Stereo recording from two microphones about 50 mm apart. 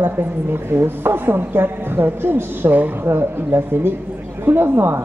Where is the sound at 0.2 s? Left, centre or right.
Right.